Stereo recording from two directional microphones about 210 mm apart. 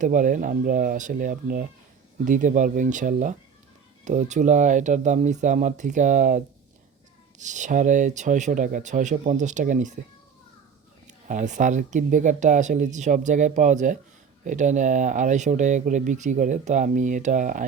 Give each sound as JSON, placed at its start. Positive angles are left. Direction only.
{"t": 0.0, "sound": "speech", "side_deg": -40}
{"t": 11.0, "sound": "speech", "side_deg": -35}